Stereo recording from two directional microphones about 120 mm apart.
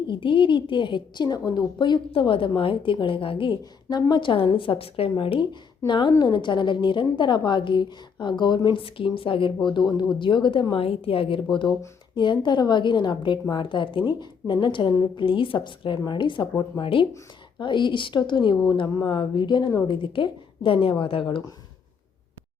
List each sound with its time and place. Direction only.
0.1 s a woman's voice: 45° left (ahead or behind)